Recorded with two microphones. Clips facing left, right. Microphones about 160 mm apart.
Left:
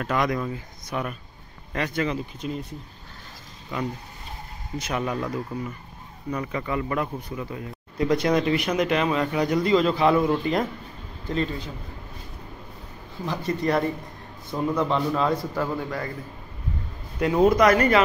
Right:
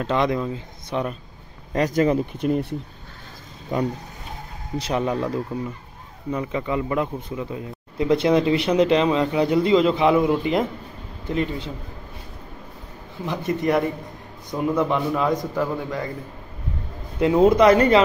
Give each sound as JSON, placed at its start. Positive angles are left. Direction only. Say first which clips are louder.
{"t": 0.0, "sound": "speech", "louder": "right 3 dB", "side_deg": -25}
{"t": 1.7, "sound": "speech", "louder": "right 7 dB", "side_deg": -40}
{"t": 2.3, "sound": "speech", "louder": "right 9 dB", "side_deg": -60}
{"t": 3.7, "sound": "speech", "louder": "right 6 dB", "side_deg": -45}
{"t": 4.7, "sound": "speech", "louder": "right 4 dB", "side_deg": -30}
{"t": 6.3, "sound": "speech", "louder": "right 3 dB", "side_deg": -20}
{"t": 13.2, "sound": "a man's voice", "louder": "right 2 dB", "side_deg": -20}
{"t": 17.2, "sound": "speech", "louder": "right 3 dB", "side_deg": -25}